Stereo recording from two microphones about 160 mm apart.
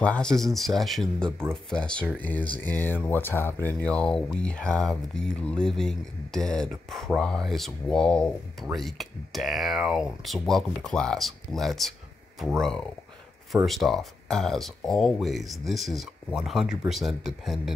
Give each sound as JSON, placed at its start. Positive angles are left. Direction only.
{"t": 0.0, "sound": "speech", "side_deg": 5}